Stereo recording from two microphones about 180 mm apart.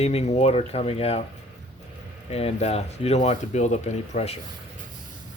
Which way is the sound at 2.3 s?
35° left (ahead or behind).